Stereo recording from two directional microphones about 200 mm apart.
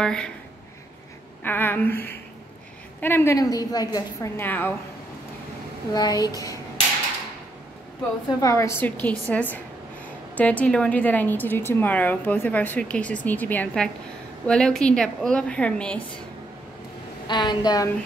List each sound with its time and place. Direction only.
0.0 s a woman's voice: 5° left (ahead or behind)
1.4 s a woman's voice: 10° left (ahead or behind)
5.9 s a woman's voice: 20° left (ahead or behind)
8.4 s a woman's voice: 15° left (ahead or behind)
17.3 s a woman's voice: 20° left (ahead or behind)